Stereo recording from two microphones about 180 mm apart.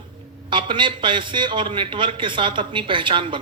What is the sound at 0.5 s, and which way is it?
A man's voice, 25° right (ahead or behind).